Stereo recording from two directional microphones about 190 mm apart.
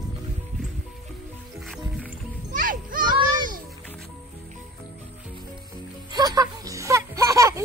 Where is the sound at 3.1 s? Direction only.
25° right (ahead or behind).